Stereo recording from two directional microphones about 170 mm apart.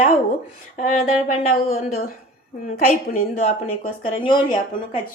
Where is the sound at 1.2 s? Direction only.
50° left (ahead or behind).